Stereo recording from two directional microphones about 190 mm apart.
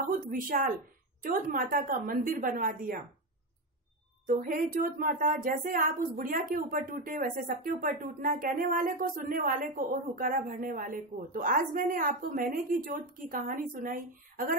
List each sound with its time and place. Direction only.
0.3 s speech: 50° right (ahead or behind)
4.3 s speech: 50° right (ahead or behind)